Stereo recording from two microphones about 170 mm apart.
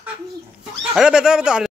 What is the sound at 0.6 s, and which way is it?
Speech, 5° right (ahead or behind).